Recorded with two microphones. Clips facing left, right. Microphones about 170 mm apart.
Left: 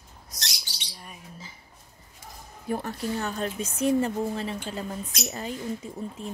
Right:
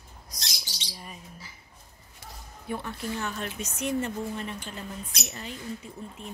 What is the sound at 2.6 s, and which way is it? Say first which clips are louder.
A woman's voice: left 4 dB; 40° left (ahead or behind).